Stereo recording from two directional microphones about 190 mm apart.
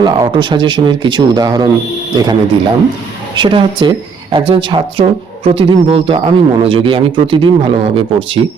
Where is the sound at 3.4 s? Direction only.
25° right (ahead or behind).